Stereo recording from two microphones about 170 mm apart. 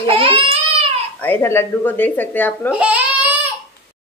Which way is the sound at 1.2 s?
10° left (ahead or behind).